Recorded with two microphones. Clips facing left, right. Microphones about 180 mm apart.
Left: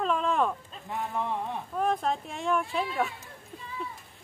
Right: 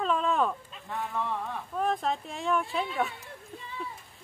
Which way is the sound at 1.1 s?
20° left (ahead or behind).